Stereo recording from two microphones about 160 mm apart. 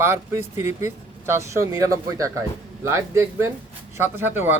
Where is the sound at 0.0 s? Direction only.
15° right (ahead or behind).